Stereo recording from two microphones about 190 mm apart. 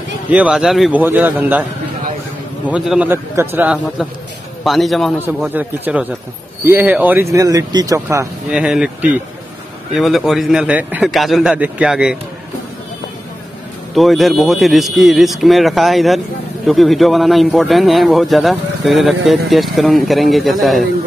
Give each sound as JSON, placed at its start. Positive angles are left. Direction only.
{"t": 0.3, "sound": "speech", "side_deg": -5}
{"t": 2.7, "sound": "speech", "side_deg": -5}
{"t": 8.5, "sound": "speech", "side_deg": -5}
{"t": 13.9, "sound": "speech", "side_deg": 0}